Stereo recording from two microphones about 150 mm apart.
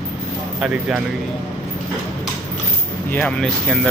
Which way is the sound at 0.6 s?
5° right (ahead or behind).